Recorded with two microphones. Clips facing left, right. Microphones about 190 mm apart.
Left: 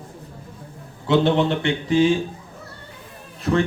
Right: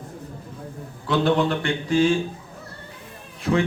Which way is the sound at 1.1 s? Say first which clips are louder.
Left 2 dB; 25° left (ahead or behind).